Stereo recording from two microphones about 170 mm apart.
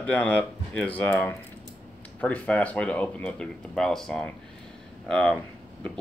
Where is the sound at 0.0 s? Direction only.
10° left (ahead or behind).